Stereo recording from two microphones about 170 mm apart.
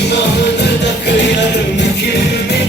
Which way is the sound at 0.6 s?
90° left.